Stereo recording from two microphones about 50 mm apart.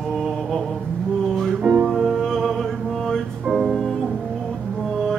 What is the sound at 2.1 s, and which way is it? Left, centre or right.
Music, centre.